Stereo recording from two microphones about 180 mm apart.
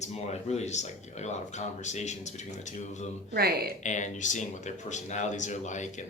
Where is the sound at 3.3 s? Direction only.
65° right (ahead or behind).